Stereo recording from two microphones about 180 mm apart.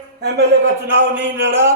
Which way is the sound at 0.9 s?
80° right.